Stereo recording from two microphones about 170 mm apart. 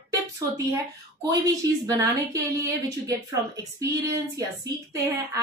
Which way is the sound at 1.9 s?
20° right (ahead or behind).